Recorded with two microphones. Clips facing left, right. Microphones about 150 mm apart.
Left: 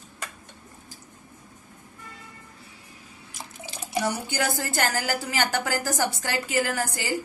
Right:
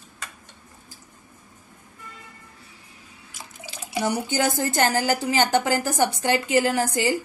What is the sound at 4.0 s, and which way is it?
A woman's voice, 20° right (ahead or behind).